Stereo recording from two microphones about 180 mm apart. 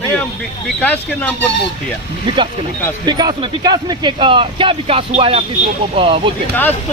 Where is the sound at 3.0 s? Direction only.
20° right (ahead or behind).